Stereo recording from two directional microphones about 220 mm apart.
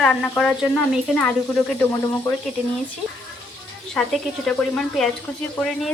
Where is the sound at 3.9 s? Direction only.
Centre (ahead or behind).